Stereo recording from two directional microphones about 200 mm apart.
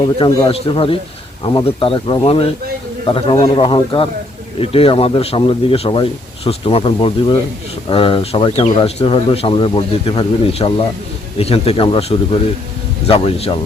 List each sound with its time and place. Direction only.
0.3 s speech: 25° left (ahead or behind)